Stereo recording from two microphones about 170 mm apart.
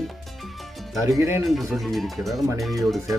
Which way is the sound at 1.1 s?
15° right (ahead or behind).